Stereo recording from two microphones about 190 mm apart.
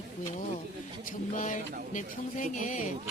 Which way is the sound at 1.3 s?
40° left (ahead or behind).